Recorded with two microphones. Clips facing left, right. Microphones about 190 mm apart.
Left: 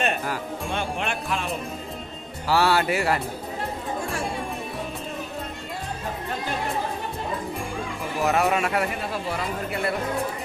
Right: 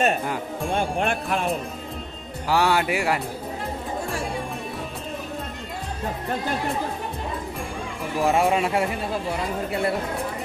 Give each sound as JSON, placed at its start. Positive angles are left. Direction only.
{"t": 0.7, "sound": "speech", "side_deg": -50}
{"t": 2.4, "sound": "speech", "side_deg": -15}
{"t": 8.2, "sound": "speech", "side_deg": -25}